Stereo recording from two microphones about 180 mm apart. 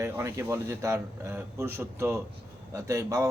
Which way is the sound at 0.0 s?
15° right (ahead or behind).